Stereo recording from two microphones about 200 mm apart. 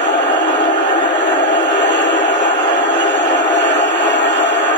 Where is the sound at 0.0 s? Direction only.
60° left (ahead or behind).